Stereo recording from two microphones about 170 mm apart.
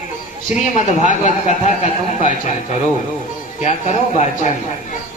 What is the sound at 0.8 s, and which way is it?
A man's voice, 45° left (ahead or behind).